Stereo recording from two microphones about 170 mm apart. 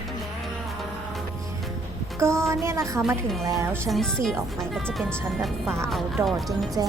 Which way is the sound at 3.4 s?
20° right (ahead or behind).